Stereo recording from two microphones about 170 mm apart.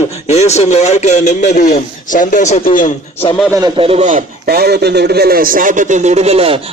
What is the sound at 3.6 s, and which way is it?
Speech, 35° right (ahead or behind).